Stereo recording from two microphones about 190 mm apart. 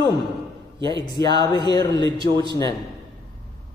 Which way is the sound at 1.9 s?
25° right (ahead or behind).